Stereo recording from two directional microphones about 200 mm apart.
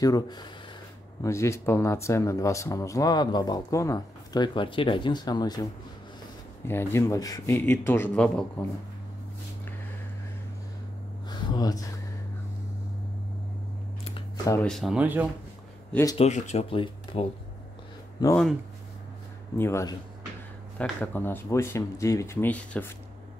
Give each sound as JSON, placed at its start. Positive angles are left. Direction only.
{"t": 0.0, "sound": "speech", "side_deg": 20}
{"t": 6.7, "sound": "speech", "side_deg": 10}
{"t": 11.2, "sound": "a sound", "side_deg": 20}
{"t": 14.4, "sound": "speech", "side_deg": 15}
{"t": 14.7, "sound": "speech", "side_deg": 0}
{"t": 15.9, "sound": "speech", "side_deg": 15}
{"t": 16.2, "sound": "speech", "side_deg": 35}
{"t": 18.2, "sound": "speech", "side_deg": 5}
{"t": 19.5, "sound": "speech", "side_deg": 15}